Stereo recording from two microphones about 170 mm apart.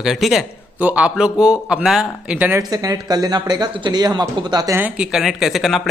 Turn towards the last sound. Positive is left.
turn(degrees=0)  # may be behind; listen again after turning